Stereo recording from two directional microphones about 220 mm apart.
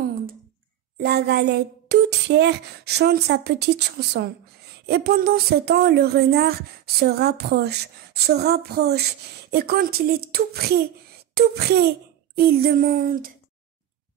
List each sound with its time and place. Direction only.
0.9 s speech: 50° right (ahead or behind)